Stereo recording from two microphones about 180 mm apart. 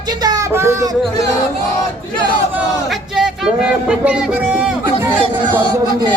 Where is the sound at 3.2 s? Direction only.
5° right (ahead or behind).